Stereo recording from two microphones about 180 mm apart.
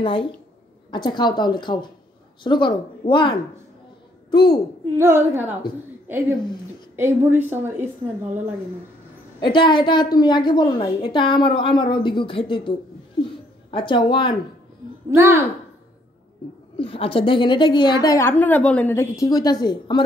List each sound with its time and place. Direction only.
0.0 s a woman's voice: 30° left (ahead or behind)
4.9 s a woman's voice: 15° right (ahead or behind)
9.4 s a woman's voice: 25° left (ahead or behind)
15.0 s speech: 15° right (ahead or behind)
16.7 s a woman's voice: 30° left (ahead or behind)